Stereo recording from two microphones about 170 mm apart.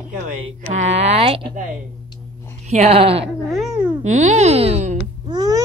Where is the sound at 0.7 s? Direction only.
40° right (ahead or behind).